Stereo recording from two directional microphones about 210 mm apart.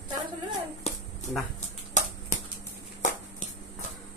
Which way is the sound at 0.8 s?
30° left (ahead or behind).